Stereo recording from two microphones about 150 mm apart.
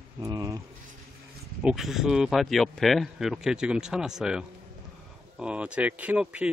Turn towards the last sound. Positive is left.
turn(degrees=-10)  # may be behind; listen again after turning